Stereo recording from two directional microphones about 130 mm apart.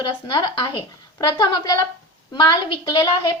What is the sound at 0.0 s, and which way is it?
A woman's voice, 40° left (ahead or behind).